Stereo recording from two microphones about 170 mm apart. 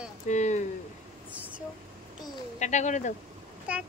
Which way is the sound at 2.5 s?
45° left (ahead or behind).